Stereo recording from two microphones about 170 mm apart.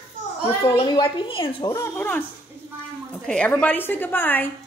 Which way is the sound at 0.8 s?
30° left (ahead or behind).